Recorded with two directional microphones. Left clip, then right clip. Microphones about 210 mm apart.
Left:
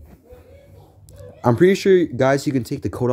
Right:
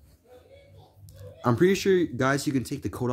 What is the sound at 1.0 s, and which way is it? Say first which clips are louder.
Speech: left 8 dB; 5° left (ahead or behind).